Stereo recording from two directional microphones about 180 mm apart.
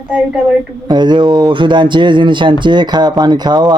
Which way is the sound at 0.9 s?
25° right (ahead or behind).